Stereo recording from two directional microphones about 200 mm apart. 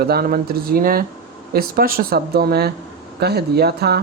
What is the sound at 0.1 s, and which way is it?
Speech, 50° right (ahead or behind).